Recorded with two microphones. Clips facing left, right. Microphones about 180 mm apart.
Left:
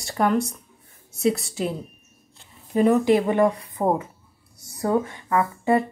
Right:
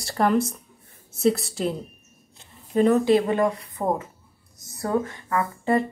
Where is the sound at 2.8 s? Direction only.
15° left (ahead or behind).